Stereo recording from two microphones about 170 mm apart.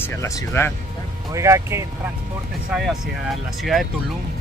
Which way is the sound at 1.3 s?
15° right (ahead or behind).